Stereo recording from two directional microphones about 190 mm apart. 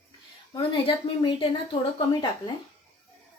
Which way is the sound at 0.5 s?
25° left (ahead or behind).